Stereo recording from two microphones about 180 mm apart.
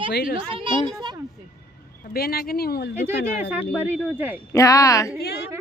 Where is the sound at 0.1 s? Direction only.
65° left (ahead or behind).